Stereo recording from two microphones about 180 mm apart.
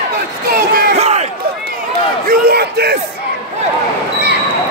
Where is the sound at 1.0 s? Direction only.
35° right (ahead or behind).